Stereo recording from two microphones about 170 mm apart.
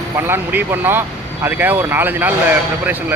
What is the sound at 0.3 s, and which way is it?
Speech, 15° right (ahead or behind).